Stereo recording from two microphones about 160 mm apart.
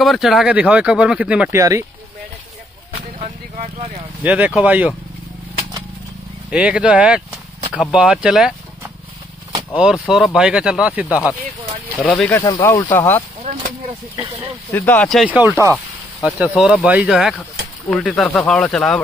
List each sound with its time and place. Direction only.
0.0 s speech: centre (ahead or behind)
1.5 s speech: 20° right (ahead or behind)
3.2 s vehicle: 40° right (ahead or behind)
4.2 s speech: 10° right (ahead or behind)
6.5 s speech: 5° right (ahead or behind)
9.8 s speech: 5° right (ahead or behind)
12.0 s speech: 10° left (ahead or behind)
13.4 s a sound: 50° right (ahead or behind)
14.7 s speech: 10° left (ahead or behind)
15.2 s speech: 10° right (ahead or behind)